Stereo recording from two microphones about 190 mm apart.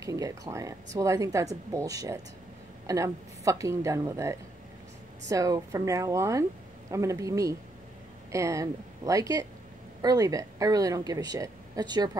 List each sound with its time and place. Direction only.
0.0 s a woman's voice: 15° right (ahead or behind)